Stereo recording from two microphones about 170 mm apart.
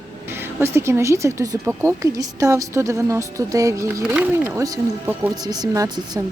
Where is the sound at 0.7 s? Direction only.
15° right (ahead or behind).